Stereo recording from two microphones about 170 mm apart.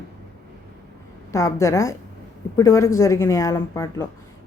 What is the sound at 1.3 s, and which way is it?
Speech, 15° left (ahead or behind).